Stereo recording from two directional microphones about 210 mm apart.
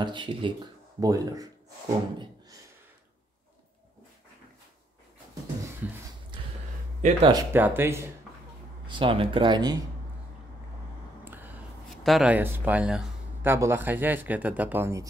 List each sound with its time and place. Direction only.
0.0 s speech: 20° right (ahead or behind)
7.0 s speech: 35° right (ahead or behind)
7.2 s speech: 15° right (ahead or behind)
8.8 s speech: 25° right (ahead or behind)
11.2 s speech: 10° right (ahead or behind)